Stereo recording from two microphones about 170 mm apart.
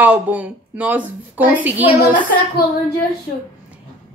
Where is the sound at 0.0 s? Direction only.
10° right (ahead or behind).